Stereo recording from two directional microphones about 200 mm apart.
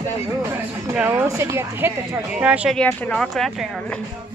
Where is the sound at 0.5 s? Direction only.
10° right (ahead or behind).